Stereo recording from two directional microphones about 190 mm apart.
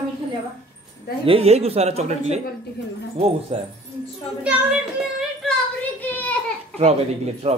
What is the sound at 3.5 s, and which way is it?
Speech, 30° right (ahead or behind).